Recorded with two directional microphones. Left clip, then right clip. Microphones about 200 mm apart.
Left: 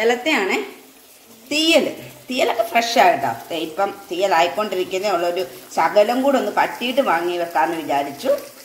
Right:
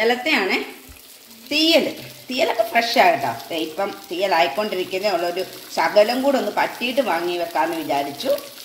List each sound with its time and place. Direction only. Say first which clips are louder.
0.0 s speech: left 1 dB; centre (ahead or behind)